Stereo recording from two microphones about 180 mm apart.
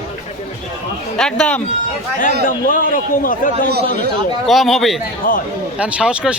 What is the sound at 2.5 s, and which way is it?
A man's voice, 50° left (ahead or behind).